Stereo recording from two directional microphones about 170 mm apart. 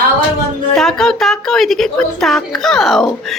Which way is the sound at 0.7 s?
5° left (ahead or behind).